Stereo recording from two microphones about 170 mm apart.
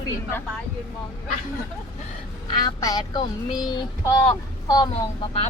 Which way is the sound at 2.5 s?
25° left (ahead or behind).